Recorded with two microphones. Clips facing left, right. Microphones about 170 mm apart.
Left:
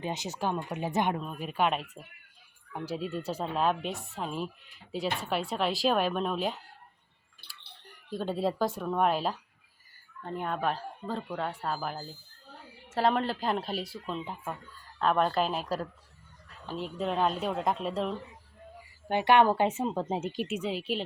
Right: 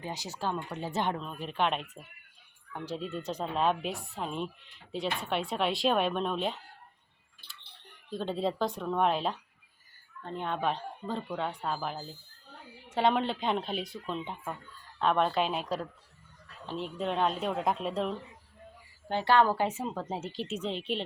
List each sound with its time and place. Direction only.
0.0 s speech: 20° left (ahead or behind); by 6.6 s 5° left (ahead or behind)
8.1 s speech: 5° left (ahead or behind)
19.0 s speech: 15° left (ahead or behind)